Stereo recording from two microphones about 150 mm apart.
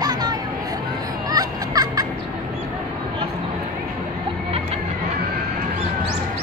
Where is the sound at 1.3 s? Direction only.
25° right (ahead or behind).